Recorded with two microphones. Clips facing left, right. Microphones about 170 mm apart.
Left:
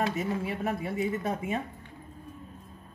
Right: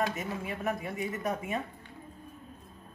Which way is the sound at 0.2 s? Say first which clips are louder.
Left 4 dB; 30° left (ahead or behind).